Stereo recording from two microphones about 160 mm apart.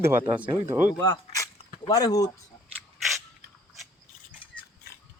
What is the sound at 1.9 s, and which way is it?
Speech, 25° left (ahead or behind).